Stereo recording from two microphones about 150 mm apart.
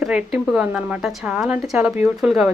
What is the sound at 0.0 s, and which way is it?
Speech, 5° right (ahead or behind).